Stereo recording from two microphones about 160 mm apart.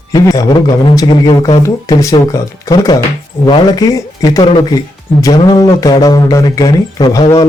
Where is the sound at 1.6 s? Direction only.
20° left (ahead or behind).